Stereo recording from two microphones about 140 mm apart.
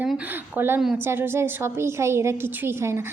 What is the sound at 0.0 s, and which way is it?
A woman's voice, 10° right (ahead or behind).